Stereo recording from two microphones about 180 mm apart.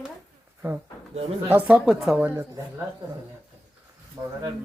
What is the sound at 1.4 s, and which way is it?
Speech, 10° right (ahead or behind).